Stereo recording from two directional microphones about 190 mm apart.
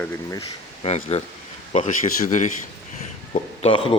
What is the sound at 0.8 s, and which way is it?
Speech, 35° left (ahead or behind).